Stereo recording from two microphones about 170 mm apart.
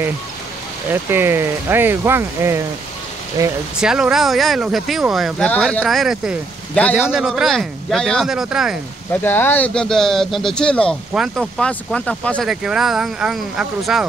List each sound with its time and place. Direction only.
0.8 s speech: 15° right (ahead or behind)
3.8 s speech: 5° right (ahead or behind)
9.2 s speech: 10° left (ahead or behind)